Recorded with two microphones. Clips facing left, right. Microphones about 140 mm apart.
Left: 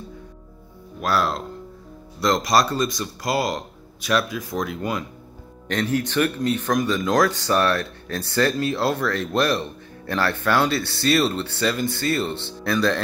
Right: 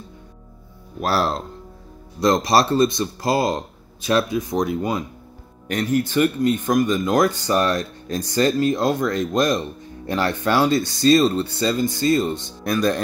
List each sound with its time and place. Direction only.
1.0 s speech: 30° right (ahead or behind)
5.7 s speech: 10° right (ahead or behind)
10.9 s speech: 70° left (ahead or behind)
12.1 s speech: 15° right (ahead or behind)